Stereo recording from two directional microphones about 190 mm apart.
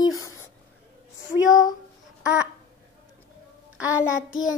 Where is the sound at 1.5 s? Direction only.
20° left (ahead or behind).